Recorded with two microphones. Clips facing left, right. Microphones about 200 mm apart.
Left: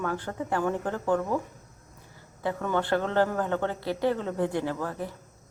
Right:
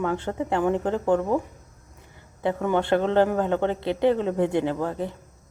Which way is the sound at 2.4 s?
20° right (ahead or behind).